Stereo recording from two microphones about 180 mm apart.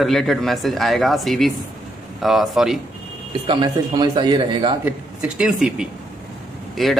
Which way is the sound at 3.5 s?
25° right (ahead or behind).